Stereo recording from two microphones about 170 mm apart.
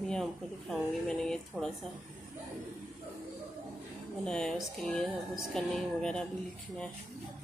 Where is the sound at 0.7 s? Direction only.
5° left (ahead or behind).